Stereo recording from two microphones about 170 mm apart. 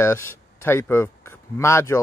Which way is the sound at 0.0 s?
15° left (ahead or behind).